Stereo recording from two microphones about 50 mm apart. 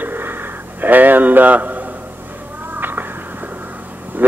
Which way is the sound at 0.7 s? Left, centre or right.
Right.